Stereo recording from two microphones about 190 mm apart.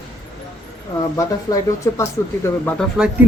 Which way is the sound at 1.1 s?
15° left (ahead or behind).